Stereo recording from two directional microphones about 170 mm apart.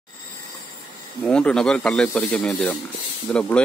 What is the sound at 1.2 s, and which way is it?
Speech, 5° left (ahead or behind).